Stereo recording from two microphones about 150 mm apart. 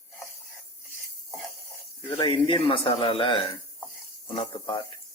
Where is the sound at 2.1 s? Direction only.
30° left (ahead or behind).